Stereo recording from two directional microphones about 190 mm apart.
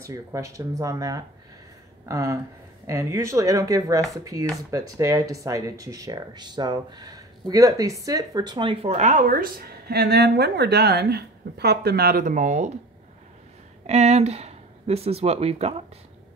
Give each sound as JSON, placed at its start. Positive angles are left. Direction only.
{"t": 0.1, "sound": "speech", "side_deg": -15}
{"t": 13.8, "sound": "speech", "side_deg": -35}